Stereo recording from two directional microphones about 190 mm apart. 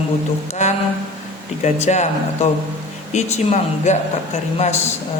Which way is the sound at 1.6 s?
35° left (ahead or behind).